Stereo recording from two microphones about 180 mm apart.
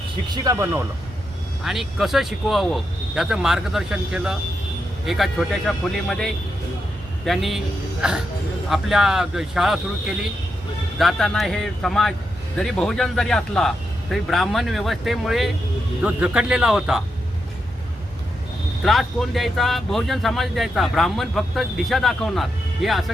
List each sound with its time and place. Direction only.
0.3 s speech: 15° right (ahead or behind)
1.6 s speech: centre (ahead or behind)
10.9 s speech: centre (ahead or behind)
18.8 s speech: centre (ahead or behind)